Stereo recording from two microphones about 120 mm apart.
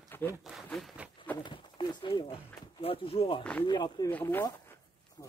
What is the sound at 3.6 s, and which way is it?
Speech, 35° left (ahead or behind).